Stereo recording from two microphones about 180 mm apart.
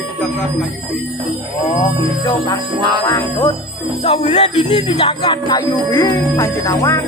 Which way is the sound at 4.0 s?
35° left (ahead or behind).